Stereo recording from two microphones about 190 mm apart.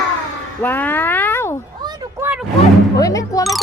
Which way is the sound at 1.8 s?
20° right (ahead or behind).